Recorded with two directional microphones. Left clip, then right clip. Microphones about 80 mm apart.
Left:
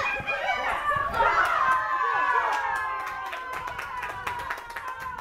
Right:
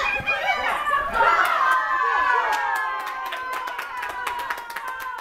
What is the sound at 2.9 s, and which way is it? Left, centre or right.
Clapping, right.